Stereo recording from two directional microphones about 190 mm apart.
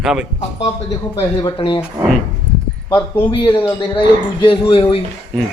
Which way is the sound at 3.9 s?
25° left (ahead or behind).